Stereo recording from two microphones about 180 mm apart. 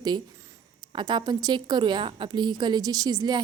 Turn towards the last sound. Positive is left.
turn(degrees=-20)  # may be behind; listen again after turning